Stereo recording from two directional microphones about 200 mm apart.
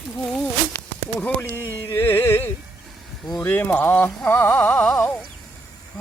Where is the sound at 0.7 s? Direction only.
10° left (ahead or behind).